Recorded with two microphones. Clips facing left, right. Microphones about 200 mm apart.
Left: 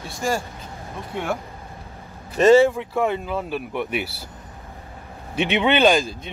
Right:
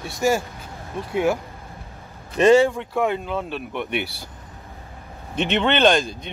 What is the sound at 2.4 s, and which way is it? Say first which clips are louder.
Speech: left 1 dB; centre (ahead or behind).